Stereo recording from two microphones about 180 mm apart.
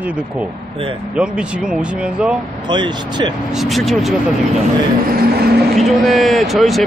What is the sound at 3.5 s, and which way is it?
Speech, centre (ahead or behind).